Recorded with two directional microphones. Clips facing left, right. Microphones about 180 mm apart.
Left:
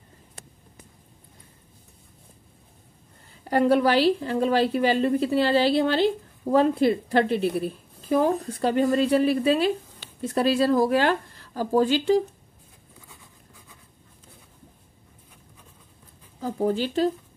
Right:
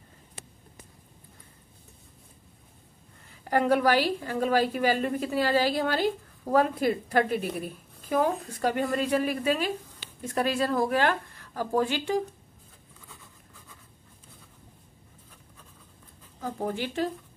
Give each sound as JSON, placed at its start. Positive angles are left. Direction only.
{"t": 3.4, "sound": "a woman's voice", "side_deg": 30}
{"t": 16.3, "sound": "speech", "side_deg": 30}